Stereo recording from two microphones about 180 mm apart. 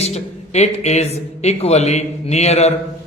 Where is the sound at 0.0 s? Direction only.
35° left (ahead or behind).